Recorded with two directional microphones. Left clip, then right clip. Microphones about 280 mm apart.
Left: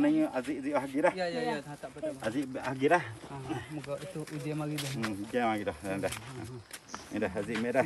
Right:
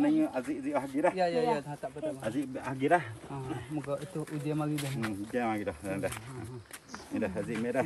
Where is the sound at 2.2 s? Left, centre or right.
Centre.